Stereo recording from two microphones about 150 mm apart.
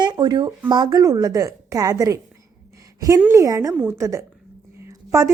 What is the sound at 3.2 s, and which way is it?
A woman's voice, 20° right (ahead or behind).